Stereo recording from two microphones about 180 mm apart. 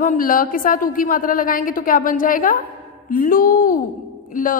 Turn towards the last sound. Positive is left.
turn(degrees=50)  # may be behind; listen again after turning